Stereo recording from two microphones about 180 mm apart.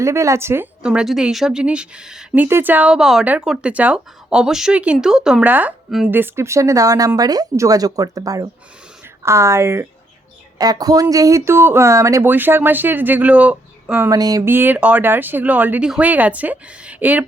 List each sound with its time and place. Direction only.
0.0 s a woman's voice: 15° right (ahead or behind)